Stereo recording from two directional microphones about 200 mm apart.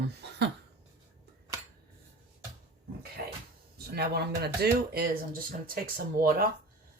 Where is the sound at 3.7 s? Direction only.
50° right (ahead or behind).